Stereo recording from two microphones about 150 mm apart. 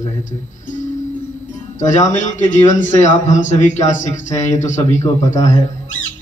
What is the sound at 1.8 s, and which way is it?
A man's voice, 55° left (ahead or behind).